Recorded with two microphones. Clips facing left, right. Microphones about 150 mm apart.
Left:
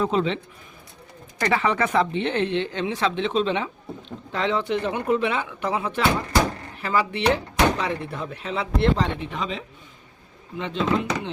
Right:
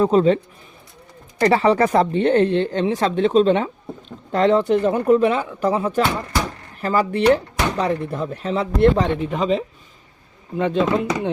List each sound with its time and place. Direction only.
0.0 s speech: 40° right (ahead or behind)
1.4 s speech: 35° right (ahead or behind)